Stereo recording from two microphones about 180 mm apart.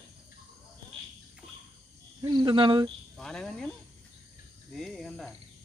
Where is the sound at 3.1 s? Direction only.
5° left (ahead or behind).